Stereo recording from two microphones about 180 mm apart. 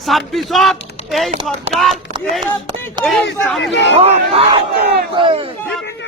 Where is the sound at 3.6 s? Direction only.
80° left.